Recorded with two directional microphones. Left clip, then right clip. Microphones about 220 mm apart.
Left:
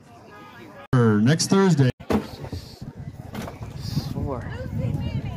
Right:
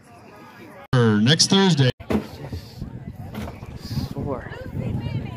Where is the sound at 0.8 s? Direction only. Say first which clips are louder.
Right 2 dB; 25° left (ahead or behind).